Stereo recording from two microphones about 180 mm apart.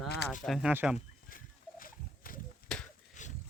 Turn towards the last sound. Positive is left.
turn(degrees=45)  # may be behind; listen again after turning